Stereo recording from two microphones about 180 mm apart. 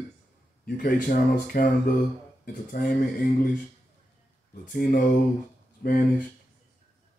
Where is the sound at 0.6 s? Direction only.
50° left (ahead or behind).